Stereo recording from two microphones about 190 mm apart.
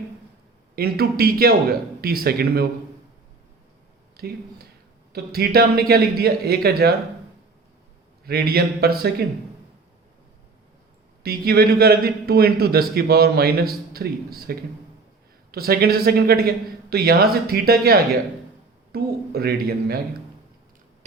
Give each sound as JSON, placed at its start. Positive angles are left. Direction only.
{"t": 0.8, "sound": "a man's voice", "side_deg": -55}
{"t": 4.2, "sound": "a man's voice", "side_deg": -55}
{"t": 8.2, "sound": "a man's voice", "side_deg": -55}
{"t": 11.2, "sound": "a man's voice", "side_deg": -55}